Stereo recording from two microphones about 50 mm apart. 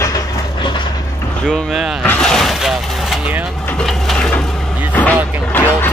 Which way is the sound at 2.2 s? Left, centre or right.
Centre.